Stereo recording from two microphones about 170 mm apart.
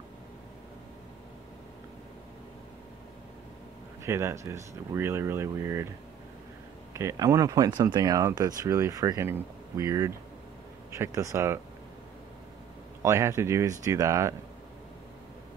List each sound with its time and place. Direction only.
4.0 s speech: 15° right (ahead or behind)
6.9 s speech: 20° right (ahead or behind)
13.0 s speech: 15° right (ahead or behind)